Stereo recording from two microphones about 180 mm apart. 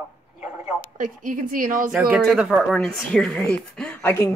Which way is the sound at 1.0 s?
45° right (ahead or behind).